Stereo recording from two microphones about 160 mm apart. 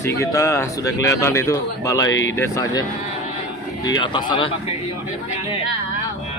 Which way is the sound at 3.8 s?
30° left (ahead or behind).